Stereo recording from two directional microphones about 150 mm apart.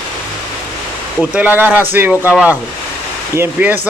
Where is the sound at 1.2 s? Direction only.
10° right (ahead or behind).